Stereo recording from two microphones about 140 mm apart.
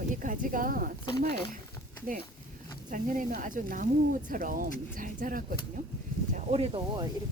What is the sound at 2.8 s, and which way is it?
Speech, 70° right (ahead or behind).